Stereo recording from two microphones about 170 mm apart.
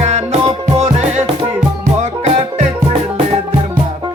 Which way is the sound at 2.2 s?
40° right (ahead or behind).